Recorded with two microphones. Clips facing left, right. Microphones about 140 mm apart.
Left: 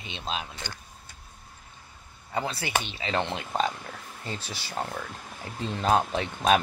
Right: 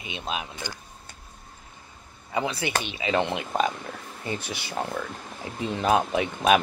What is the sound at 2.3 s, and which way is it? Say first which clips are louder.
Speech: right 2 dB; 20° right (ahead or behind).